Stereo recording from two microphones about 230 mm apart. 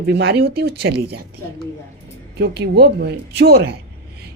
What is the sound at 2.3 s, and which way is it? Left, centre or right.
Speech, right.